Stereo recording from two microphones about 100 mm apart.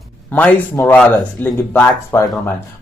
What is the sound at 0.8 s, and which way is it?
Speech, 20° left (ahead or behind).